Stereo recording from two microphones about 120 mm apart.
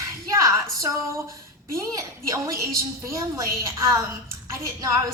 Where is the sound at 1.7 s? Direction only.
25° right (ahead or behind).